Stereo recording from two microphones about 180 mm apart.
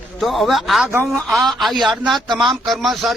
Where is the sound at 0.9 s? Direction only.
15° right (ahead or behind).